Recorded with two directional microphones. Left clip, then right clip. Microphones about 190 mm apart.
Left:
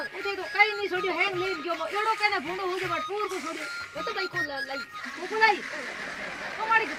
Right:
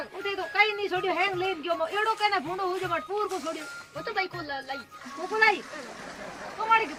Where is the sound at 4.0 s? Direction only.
15° right (ahead or behind).